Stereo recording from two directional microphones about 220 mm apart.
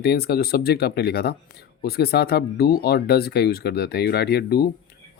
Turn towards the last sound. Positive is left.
turn(degrees=45)  # may be behind; listen again after turning